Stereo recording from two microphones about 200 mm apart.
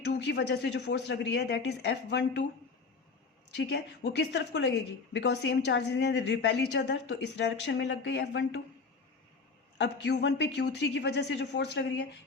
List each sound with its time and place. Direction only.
0.0 s a woman's voice: 60° left (ahead or behind)
3.5 s a woman's voice: 55° left (ahead or behind)
9.7 s a woman's voice: 60° left (ahead or behind)